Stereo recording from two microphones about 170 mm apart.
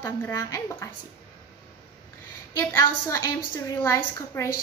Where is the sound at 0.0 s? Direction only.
15° left (ahead or behind).